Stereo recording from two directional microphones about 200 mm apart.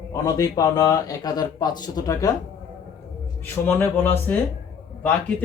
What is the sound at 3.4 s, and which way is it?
Speech, 10° left (ahead or behind).